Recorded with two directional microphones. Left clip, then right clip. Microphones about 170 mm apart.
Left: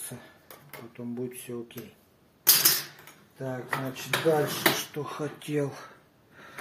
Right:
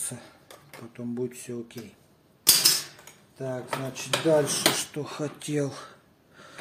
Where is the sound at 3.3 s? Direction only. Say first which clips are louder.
Right 1 dB; 50° right (ahead or behind); by 5.8 s 30° right (ahead or behind).